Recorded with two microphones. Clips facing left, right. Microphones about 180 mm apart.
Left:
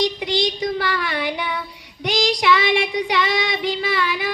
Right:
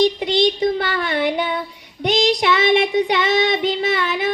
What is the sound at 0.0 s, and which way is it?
Child singing, 25° right (ahead or behind).